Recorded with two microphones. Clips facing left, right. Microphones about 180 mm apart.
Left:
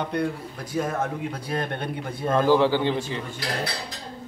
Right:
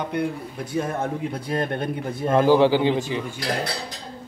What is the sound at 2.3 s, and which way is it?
Speech, 20° right (ahead or behind).